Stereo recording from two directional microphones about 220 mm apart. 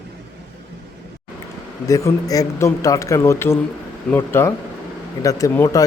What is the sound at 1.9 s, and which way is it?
Speech, 15° left (ahead or behind).